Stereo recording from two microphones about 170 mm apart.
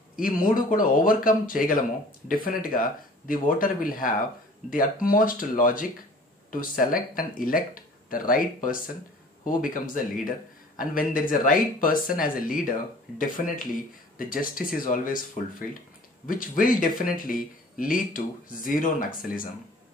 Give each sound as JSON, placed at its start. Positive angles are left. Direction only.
{"t": 0.1, "sound": "speech", "side_deg": 55}
{"t": 14.1, "sound": "speech", "side_deg": 55}
{"t": 16.3, "sound": "speech", "side_deg": 55}